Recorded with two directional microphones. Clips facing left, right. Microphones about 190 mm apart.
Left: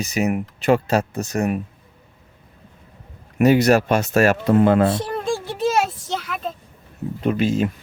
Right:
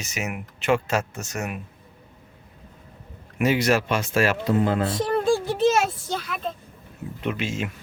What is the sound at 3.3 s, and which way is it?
Speech, 40° left (ahead or behind).